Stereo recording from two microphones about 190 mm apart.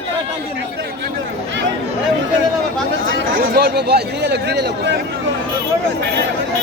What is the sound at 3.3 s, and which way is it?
Speech, 55° right (ahead or behind).